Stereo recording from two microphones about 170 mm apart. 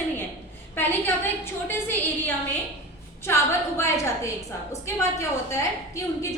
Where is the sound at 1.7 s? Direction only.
15° left (ahead or behind).